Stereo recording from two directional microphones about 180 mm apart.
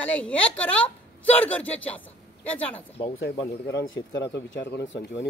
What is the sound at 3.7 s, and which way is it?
Speech, 90° left.